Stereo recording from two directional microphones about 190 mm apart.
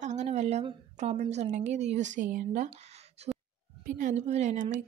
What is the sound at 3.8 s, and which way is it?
Speech, 40° right (ahead or behind).